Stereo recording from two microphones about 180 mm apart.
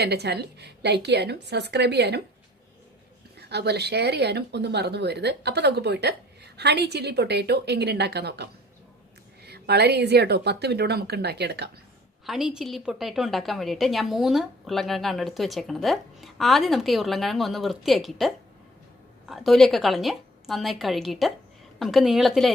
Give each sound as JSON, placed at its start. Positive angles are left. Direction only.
{"t": 0.0, "sound": "speech", "side_deg": -65}
{"t": 3.3, "sound": "a woman's voice", "side_deg": -65}
{"t": 12.3, "sound": "a woman's voice", "side_deg": 0}